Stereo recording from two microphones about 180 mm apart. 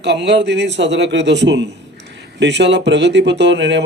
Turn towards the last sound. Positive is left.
turn(degrees=-75)  # may be behind; listen again after turning